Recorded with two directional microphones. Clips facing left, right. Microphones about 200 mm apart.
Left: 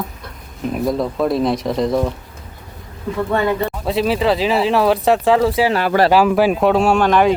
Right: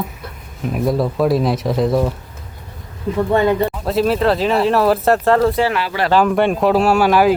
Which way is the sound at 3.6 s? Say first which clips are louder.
Right 2 dB; centre (ahead or behind).